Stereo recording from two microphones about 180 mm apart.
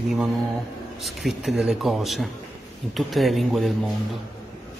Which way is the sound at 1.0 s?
Centre (ahead or behind).